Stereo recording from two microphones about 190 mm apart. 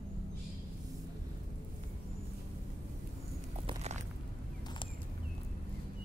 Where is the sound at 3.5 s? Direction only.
35° right (ahead or behind).